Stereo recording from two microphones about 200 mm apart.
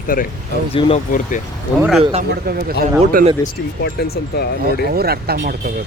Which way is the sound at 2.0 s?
30° right (ahead or behind).